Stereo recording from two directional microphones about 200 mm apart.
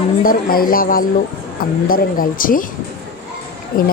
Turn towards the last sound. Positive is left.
turn(degrees=45)  # may be behind; listen again after turning